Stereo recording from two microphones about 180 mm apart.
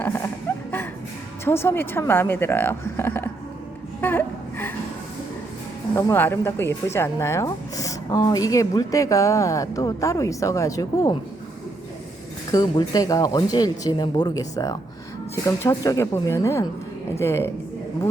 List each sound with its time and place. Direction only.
0.0 s music: 10° left (ahead or behind)
1.5 s speech: 15° left (ahead or behind)
4.0 s gasp: 10° left (ahead or behind)
5.9 s speech: 15° left (ahead or behind)
12.5 s speech: 20° left (ahead or behind)